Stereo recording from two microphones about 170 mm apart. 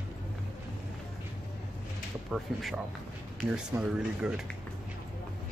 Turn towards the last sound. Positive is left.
turn(degrees=-5)  # may be behind; listen again after turning